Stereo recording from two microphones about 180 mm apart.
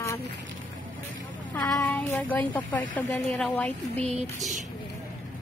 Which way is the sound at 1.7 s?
10° left (ahead or behind).